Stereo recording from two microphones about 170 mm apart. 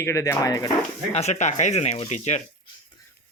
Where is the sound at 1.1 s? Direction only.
40° left (ahead or behind).